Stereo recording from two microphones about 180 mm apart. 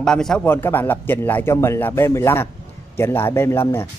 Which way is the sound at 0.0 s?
5° left (ahead or behind).